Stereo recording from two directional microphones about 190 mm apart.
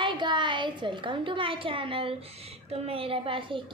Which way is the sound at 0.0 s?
25° right (ahead or behind).